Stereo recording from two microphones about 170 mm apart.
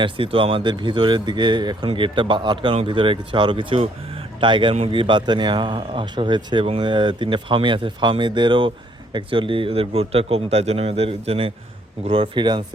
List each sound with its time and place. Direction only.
0.0 s a man's voice: 30° right (ahead or behind)